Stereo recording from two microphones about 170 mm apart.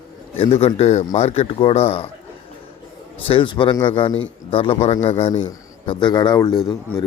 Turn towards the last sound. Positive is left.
turn(degrees=25)  # may be behind; listen again after turning